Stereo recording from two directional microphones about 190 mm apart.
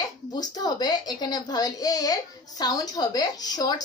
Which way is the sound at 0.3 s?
20° left (ahead or behind).